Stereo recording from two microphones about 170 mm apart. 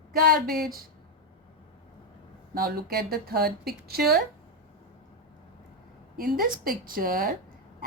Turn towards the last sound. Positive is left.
turn(degrees=-60)  # may be behind; listen again after turning